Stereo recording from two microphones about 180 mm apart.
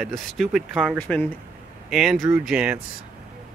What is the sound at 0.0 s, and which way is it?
Speech, centre (ahead or behind).